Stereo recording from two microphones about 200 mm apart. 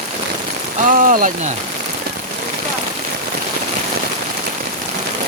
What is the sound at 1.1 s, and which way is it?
Speech, 45° right (ahead or behind).